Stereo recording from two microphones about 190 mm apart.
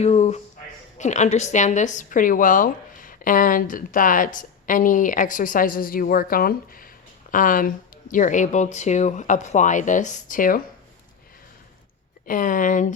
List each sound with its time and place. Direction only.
0.0 s a woman's voice: 35° left (ahead or behind)
12.2 s a woman's voice: 45° left (ahead or behind)